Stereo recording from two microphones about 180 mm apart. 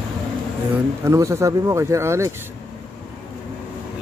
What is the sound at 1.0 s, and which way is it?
Speech, 15° right (ahead or behind).